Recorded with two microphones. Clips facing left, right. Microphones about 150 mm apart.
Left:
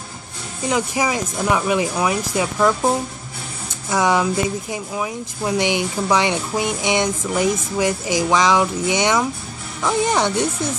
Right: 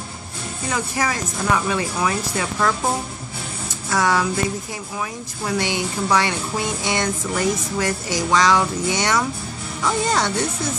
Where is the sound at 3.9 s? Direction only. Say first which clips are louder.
Left 2 dB; 15° left (ahead or behind).